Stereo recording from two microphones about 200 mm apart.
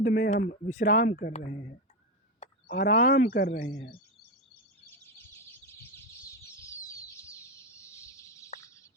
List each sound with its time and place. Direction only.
0.0 s speech: 40° left (ahead or behind)
2.4 s a sound: 35° left (ahead or behind)
2.7 s speech: 65° left (ahead or behind)
3.0 s speech: 40° left (ahead or behind)
3.3 s speech: 55° left (ahead or behind)
5.0 s bird: 10° left (ahead or behind)